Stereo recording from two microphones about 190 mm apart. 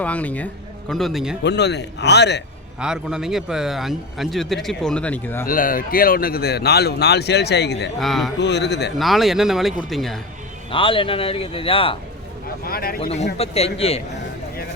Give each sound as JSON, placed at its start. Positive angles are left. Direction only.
{"t": 0.0, "sound": "a man's voice", "side_deg": 10}
{"t": 1.5, "sound": "speech", "side_deg": 65}
{"t": 2.8, "sound": "a man's voice", "side_deg": -5}
{"t": 5.5, "sound": "speech", "side_deg": 45}
{"t": 7.9, "sound": "a man's voice", "side_deg": 0}
{"t": 8.4, "sound": "speech", "side_deg": 65}
{"t": 9.0, "sound": "a man's voice", "side_deg": 0}
{"t": 10.7, "sound": "speech", "side_deg": 25}
{"t": 12.6, "sound": "a man's voice", "side_deg": 50}
{"t": 13.0, "sound": "a man's voice", "side_deg": 35}